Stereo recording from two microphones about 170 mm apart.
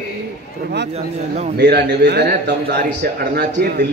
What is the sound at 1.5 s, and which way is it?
Speech, 75° right (ahead or behind).